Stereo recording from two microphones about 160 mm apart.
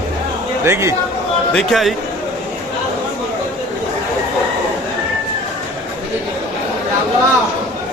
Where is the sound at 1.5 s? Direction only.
Centre (ahead or behind).